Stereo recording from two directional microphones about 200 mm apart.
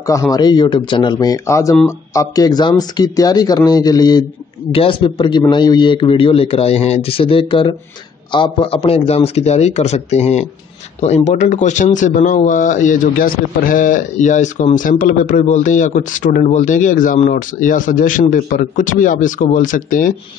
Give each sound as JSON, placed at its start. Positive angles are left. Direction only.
{"t": 0.0, "sound": "speech", "side_deg": 15}